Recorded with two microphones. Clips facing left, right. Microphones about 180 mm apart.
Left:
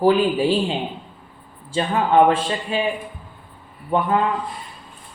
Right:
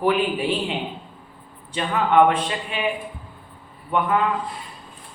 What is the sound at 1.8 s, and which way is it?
Speech, 30° left (ahead or behind).